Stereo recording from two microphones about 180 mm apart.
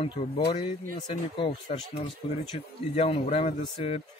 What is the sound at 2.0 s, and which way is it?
A man's voice, 30° left (ahead or behind).